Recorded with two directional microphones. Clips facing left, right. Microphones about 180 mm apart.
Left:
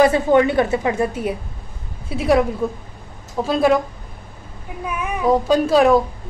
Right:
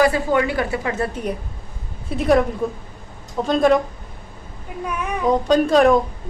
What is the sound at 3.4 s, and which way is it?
Speech, 5° left (ahead or behind).